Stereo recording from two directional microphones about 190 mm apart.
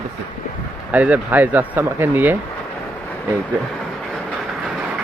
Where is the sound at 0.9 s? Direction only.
10° right (ahead or behind).